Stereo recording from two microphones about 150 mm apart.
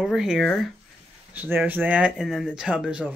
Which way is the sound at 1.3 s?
10° right (ahead or behind).